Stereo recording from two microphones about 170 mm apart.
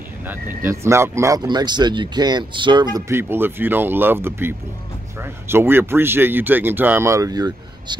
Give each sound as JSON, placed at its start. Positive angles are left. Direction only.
{"t": 0.7, "sound": "speech", "side_deg": -15}
{"t": 3.1, "sound": "speech", "side_deg": -15}